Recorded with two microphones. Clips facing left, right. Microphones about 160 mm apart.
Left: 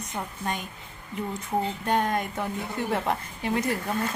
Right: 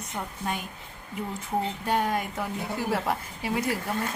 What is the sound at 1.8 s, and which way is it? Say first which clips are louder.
A woman's voice: left 1 dB; 5° right (ahead or behind).